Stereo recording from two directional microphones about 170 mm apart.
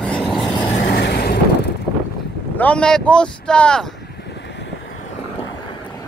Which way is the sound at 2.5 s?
10° left (ahead or behind).